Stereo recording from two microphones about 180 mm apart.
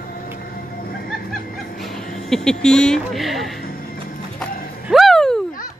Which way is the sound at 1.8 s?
Centre (ahead or behind).